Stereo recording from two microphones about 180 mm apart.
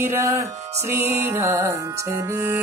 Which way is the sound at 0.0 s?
15° right (ahead or behind).